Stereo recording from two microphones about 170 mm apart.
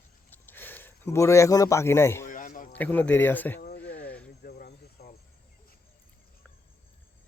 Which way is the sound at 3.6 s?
80° left.